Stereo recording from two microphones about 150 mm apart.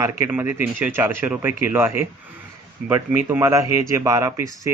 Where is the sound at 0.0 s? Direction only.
15° right (ahead or behind).